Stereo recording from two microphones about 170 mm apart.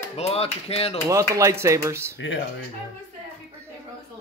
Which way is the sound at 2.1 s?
90° left.